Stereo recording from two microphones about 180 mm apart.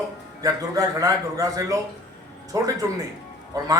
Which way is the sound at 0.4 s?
20° right (ahead or behind).